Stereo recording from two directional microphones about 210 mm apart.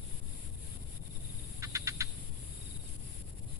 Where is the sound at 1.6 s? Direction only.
15° right (ahead or behind).